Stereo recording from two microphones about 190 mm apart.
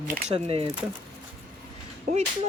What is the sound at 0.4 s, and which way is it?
Speech, 30° right (ahead or behind).